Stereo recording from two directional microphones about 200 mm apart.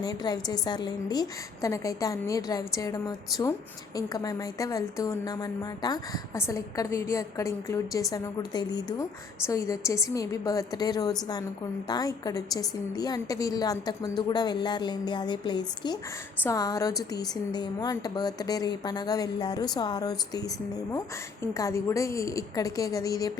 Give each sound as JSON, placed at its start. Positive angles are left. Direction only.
{"t": 0.0, "sound": "a woman's voice", "side_deg": 20}